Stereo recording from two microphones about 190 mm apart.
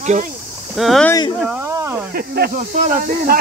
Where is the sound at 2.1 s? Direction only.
55° right (ahead or behind).